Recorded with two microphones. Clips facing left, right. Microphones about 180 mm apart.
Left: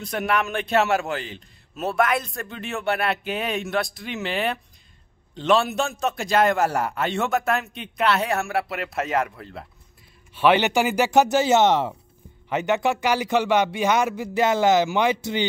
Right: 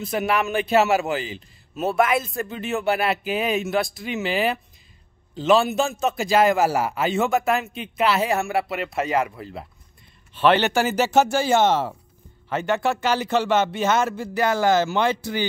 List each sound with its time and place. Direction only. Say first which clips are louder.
0.0 s a man's voice: right 2 dB; centre (ahead or behind)
10.3 s a man's voice: even; 10° left (ahead or behind)